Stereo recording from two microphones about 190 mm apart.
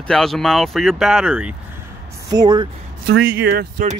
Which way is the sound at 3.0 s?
70° right (ahead or behind).